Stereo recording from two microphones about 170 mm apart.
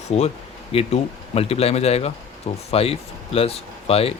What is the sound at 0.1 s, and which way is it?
Speech, 40° left (ahead or behind).